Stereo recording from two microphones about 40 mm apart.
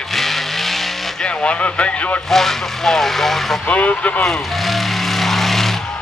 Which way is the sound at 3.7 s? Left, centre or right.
Left.